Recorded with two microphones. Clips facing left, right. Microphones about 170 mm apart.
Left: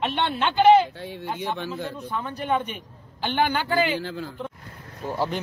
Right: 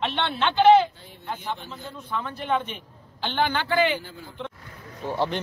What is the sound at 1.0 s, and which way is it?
Speech, 75° left (ahead or behind).